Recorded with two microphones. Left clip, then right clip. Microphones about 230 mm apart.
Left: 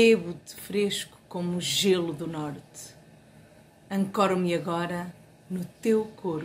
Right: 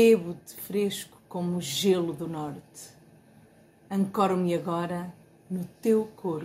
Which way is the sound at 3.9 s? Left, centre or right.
Centre.